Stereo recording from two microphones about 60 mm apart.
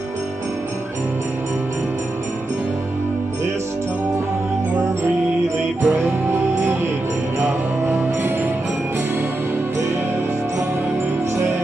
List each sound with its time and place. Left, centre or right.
5.9 s music: right
7.4 s music: right